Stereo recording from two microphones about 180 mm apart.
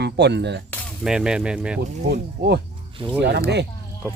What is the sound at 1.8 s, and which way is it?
Speech, 65° right (ahead or behind).